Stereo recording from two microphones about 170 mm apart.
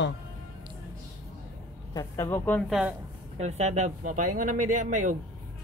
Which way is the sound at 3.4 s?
40° right (ahead or behind).